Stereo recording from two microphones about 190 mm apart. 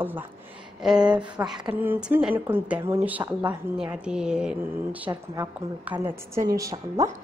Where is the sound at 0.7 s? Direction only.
5° right (ahead or behind).